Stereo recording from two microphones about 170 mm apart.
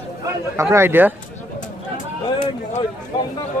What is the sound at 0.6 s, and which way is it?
Speech, 10° right (ahead or behind).